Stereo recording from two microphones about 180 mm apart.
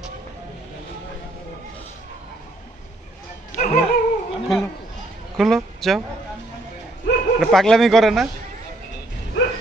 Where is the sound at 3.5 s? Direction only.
40° left (ahead or behind).